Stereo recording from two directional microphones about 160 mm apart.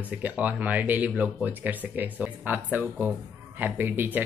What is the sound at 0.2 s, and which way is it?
Speech, 10° right (ahead or behind).